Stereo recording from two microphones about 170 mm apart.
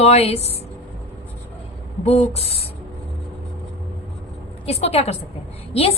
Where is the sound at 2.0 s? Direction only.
35° left (ahead or behind).